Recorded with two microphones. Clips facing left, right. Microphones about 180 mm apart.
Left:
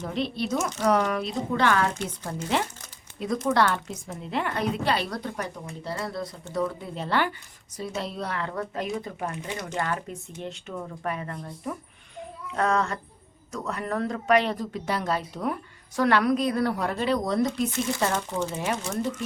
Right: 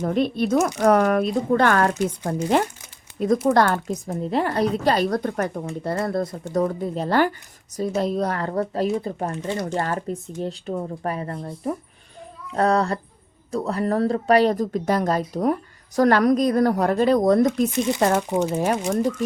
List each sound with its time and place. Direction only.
0.0 s speech: 50° right (ahead or behind)
18.2 s speech: 15° right (ahead or behind)
18.5 s speech: 45° right (ahead or behind)